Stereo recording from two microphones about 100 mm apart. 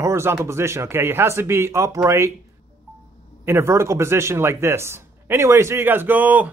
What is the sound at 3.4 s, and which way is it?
Speech, 25° right (ahead or behind).